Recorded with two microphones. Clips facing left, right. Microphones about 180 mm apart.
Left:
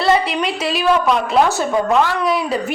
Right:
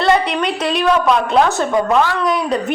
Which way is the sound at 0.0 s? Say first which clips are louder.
Right 1 dB; 5° left (ahead or behind).